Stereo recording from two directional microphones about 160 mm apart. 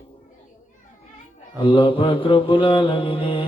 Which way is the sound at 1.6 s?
35° left (ahead or behind).